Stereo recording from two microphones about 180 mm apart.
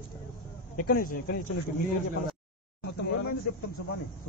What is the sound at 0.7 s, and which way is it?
Speech, 55° left (ahead or behind).